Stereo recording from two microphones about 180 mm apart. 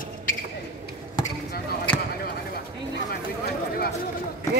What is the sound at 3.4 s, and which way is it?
Chatter, 55° left (ahead or behind).